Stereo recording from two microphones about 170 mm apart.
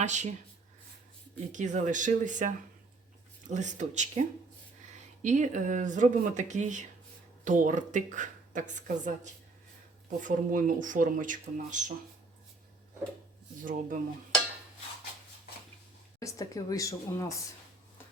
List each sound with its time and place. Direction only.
0.0 s a woman's voice: 45° right (ahead or behind)
1.5 s a woman's voice: 45° right (ahead or behind)
5.2 s a woman's voice: 45° right (ahead or behind)
13.6 s a woman's voice: 50° right (ahead or behind)
16.2 s speech: 20° left (ahead or behind)